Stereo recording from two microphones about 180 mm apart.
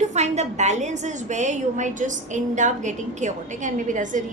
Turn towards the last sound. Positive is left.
turn(degrees=-45)  # may be behind; listen again after turning